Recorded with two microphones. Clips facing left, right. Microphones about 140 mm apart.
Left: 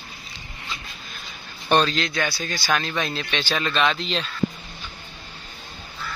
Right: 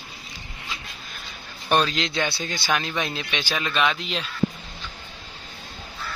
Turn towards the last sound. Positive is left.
turn(degrees=-10)  # may be behind; listen again after turning